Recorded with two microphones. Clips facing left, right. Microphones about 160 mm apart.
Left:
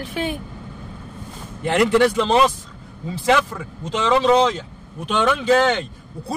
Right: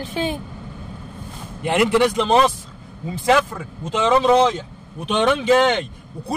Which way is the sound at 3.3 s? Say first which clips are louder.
Right 1 dB; 50° right (ahead or behind).